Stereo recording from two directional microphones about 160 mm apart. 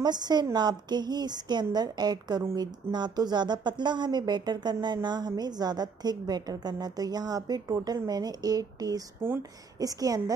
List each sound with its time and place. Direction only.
0.0 s a woman's voice: 25° right (ahead or behind)